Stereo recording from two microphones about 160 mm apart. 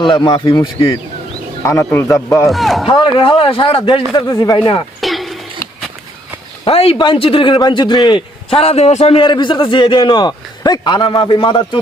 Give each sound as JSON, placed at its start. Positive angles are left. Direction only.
{"t": 0.0, "sound": "speech", "side_deg": 30}
{"t": 2.5, "sound": "speech", "side_deg": 0}
{"t": 2.8, "sound": "a man's voice", "side_deg": 30}
{"t": 4.9, "sound": "a sound", "side_deg": 0}
{"t": 6.7, "sound": "a man's voice", "side_deg": 35}